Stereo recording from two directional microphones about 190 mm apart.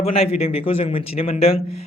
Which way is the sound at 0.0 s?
30° left (ahead or behind).